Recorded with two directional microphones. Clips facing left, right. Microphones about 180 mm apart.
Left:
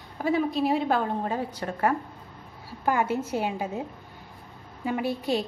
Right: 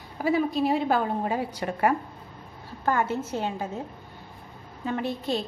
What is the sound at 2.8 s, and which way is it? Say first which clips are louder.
A woman's voice: left 1 dB; 10° left (ahead or behind).